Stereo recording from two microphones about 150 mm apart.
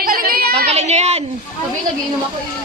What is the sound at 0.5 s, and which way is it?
Speech, 45° right (ahead or behind).